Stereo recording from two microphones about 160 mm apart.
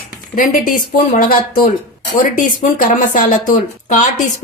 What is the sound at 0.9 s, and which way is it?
A woman's voice, 60° left (ahead or behind).